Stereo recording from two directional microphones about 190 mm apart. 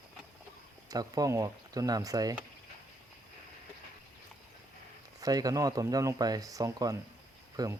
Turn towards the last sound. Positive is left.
turn(degrees=-20)  # may be behind; listen again after turning